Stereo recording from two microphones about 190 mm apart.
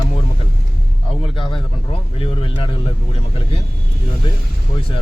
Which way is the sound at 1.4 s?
25° left (ahead or behind).